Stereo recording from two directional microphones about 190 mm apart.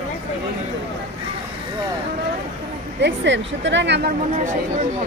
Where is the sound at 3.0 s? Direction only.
70° right (ahead or behind).